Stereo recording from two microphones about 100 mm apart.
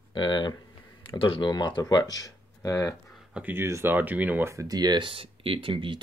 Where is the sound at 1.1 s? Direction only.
60° left (ahead or behind).